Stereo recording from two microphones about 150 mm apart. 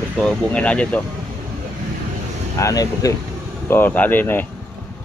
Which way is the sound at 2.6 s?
25° left (ahead or behind).